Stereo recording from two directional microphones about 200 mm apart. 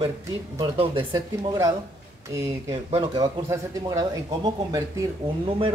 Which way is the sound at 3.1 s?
20° right (ahead or behind).